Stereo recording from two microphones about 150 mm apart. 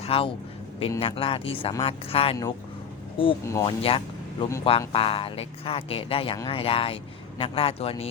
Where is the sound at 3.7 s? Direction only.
35° left (ahead or behind).